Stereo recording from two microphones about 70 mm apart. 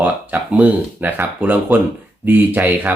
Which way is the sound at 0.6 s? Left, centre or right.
Right.